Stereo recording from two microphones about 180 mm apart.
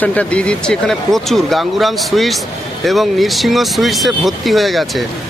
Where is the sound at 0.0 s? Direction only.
5° left (ahead or behind).